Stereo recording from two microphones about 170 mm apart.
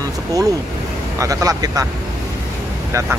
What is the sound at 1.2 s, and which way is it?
Speech, 20° right (ahead or behind).